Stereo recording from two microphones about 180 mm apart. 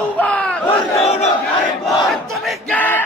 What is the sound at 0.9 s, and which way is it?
Battle cry, 35° left (ahead or behind).